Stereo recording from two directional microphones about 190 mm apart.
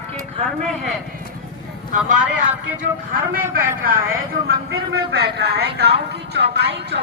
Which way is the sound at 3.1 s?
50° right (ahead or behind).